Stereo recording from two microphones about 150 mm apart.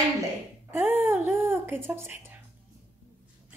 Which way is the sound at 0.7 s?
15° right (ahead or behind).